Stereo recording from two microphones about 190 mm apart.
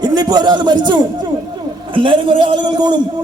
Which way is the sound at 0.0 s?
20° right (ahead or behind).